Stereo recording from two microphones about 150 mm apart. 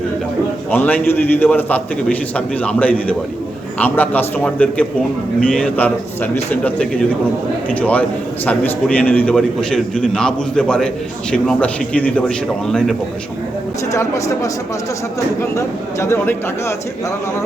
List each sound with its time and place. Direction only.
0.7 s a man's voice: 10° left (ahead or behind)
13.9 s a woman's voice: 20° left (ahead or behind)